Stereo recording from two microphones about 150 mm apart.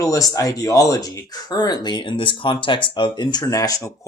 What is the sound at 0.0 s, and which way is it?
Speech, 20° left (ahead or behind).